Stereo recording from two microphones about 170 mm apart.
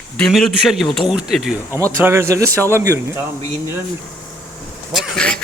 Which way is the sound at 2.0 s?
15° right (ahead or behind).